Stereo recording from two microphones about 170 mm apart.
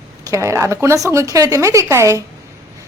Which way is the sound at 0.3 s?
15° right (ahead or behind).